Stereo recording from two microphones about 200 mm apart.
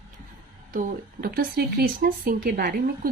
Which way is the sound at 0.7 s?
40° right (ahead or behind).